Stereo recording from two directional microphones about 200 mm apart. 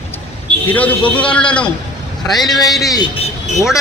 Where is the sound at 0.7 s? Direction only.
10° left (ahead or behind).